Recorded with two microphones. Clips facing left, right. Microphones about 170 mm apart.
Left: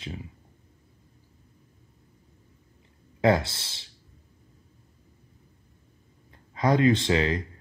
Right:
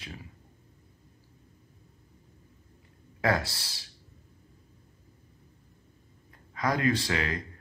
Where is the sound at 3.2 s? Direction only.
25° left (ahead or behind).